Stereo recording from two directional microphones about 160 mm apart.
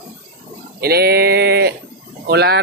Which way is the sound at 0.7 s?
80° right.